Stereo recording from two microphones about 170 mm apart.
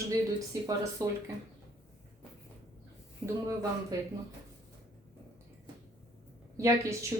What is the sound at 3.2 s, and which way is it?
Speech, 5° right (ahead or behind).